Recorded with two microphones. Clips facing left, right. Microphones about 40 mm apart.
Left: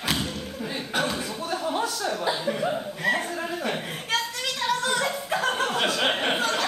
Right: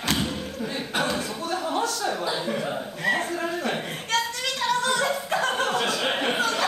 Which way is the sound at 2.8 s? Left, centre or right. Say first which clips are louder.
Even; centre.